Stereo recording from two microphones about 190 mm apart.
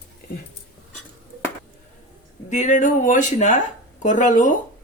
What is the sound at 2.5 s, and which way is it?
Speech, 40° left (ahead or behind).